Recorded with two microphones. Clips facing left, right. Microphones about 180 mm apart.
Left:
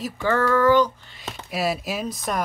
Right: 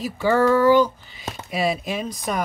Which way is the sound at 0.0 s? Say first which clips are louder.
Right 4 dB; 10° right (ahead or behind).